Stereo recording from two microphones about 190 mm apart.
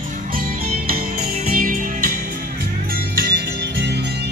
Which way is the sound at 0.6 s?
50° right (ahead or behind).